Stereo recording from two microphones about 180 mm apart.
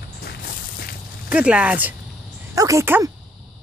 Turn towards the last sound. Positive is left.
turn(degrees=-15)  # may be behind; listen again after turning